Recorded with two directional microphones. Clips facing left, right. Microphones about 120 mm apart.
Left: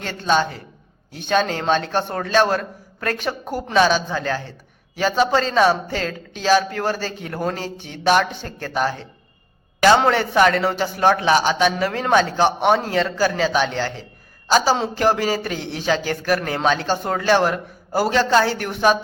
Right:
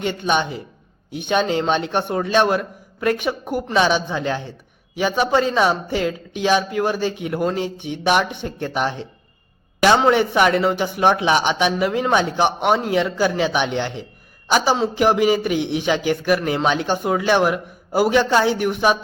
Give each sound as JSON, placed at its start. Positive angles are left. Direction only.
{"t": 0.0, "sound": "a man's voice", "side_deg": -15}
{"t": 10.1, "sound": "a man's voice", "side_deg": -15}